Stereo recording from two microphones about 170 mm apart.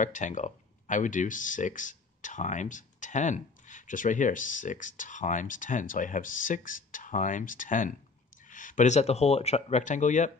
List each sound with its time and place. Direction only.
0.0 s speech: 45° left (ahead or behind)